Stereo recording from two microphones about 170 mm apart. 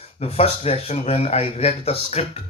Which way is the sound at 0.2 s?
35° left (ahead or behind).